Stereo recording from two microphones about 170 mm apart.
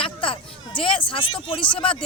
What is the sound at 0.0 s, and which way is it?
Speech, 30° left (ahead or behind).